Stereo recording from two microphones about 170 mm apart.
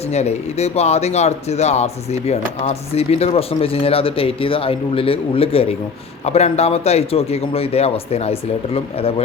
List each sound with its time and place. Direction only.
0.1 s speech: 40° left (ahead or behind)